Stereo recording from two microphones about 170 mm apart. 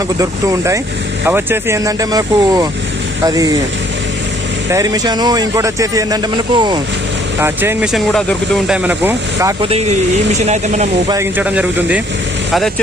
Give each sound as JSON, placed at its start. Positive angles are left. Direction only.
{"t": 0.2, "sound": "speech", "side_deg": -20}
{"t": 4.7, "sound": "speech", "side_deg": -20}
{"t": 7.3, "sound": "speech", "side_deg": -15}
{"t": 7.9, "sound": "speech", "side_deg": 0}
{"t": 10.4, "sound": "speech", "side_deg": -45}
{"t": 11.1, "sound": "speech", "side_deg": -15}